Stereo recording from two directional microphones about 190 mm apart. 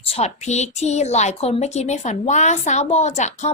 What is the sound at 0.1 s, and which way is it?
A woman's voice, 35° left (ahead or behind).